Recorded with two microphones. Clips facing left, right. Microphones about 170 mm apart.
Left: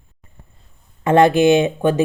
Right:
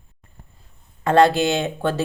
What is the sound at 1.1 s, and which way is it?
Speech, 20° left (ahead or behind).